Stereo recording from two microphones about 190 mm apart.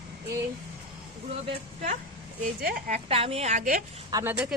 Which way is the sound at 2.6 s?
50° right (ahead or behind).